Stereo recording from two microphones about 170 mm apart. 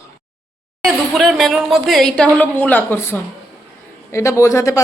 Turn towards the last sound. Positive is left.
turn(degrees=20)  # may be behind; listen again after turning